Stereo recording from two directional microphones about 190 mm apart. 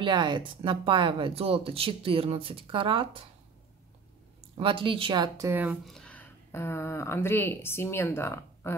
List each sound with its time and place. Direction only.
0.0 s speech: 25° right (ahead or behind)
4.6 s speech: 25° right (ahead or behind)
5.5 s speech: 10° right (ahead or behind)
5.9 s speech: 5° left (ahead or behind)